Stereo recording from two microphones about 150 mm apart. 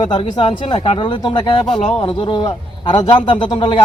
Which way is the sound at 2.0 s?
35° left (ahead or behind).